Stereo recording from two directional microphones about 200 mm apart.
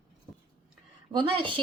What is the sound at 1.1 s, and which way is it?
Speech, 25° right (ahead or behind).